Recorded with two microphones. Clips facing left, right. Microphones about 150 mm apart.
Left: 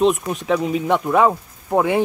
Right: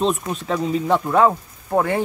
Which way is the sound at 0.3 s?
15° left (ahead or behind).